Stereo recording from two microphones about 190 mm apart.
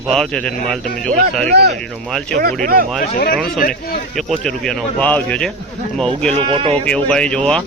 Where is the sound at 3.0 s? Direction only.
50° left (ahead or behind).